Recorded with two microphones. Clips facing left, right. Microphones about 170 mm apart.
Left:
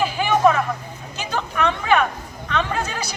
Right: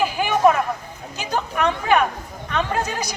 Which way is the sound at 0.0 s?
10° right (ahead or behind).